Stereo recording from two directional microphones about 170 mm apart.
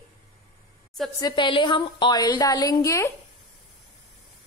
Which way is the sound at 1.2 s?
25° left (ahead or behind).